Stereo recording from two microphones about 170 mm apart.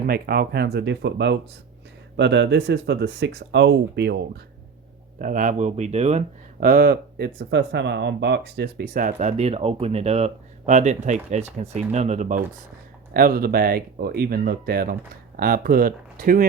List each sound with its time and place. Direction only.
0.1 s speech: 65° right (ahead or behind)
5.2 s speech: 50° right (ahead or behind)
6.7 s speech: 60° right (ahead or behind)
9.1 s speech: 40° right (ahead or behind)
13.1 s speech: 60° right (ahead or behind)